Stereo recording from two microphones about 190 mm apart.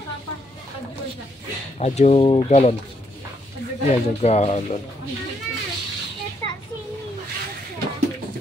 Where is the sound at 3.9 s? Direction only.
35° left (ahead or behind).